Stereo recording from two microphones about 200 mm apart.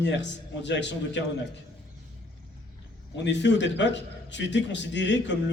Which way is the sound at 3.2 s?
60° left (ahead or behind).